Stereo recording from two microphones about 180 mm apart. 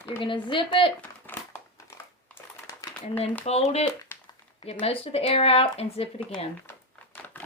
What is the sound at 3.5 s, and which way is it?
A woman's voice, 35° left (ahead or behind).